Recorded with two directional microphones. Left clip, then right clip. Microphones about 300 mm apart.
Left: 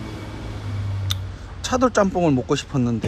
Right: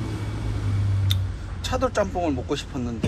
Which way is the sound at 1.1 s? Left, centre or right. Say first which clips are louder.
Left 1 dB; left.